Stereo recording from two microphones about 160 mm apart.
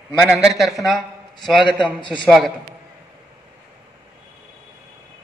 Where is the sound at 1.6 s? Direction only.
30° left (ahead or behind).